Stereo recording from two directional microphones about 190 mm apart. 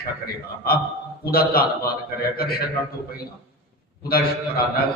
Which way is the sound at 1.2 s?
55° left (ahead or behind).